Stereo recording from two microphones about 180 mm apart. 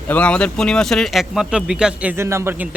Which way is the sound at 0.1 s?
5° left (ahead or behind).